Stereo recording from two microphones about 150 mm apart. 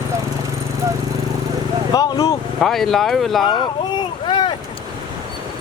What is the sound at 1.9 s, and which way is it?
Speech, 25° left (ahead or behind).